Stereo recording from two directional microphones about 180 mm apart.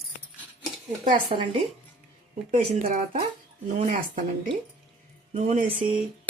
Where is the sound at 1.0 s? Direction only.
25° right (ahead or behind).